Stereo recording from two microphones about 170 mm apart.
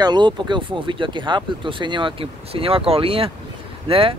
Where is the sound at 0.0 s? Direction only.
25° right (ahead or behind).